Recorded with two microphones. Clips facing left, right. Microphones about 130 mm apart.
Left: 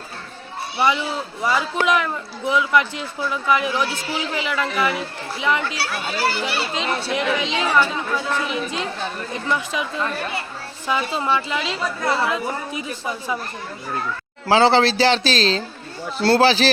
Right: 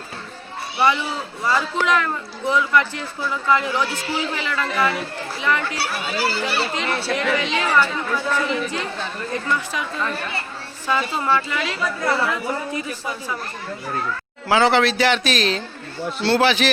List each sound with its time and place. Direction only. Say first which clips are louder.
1.5 s a woman's voice: even; 15° left (ahead or behind)
14.4 s speech: left 2 dB; 30° left (ahead or behind)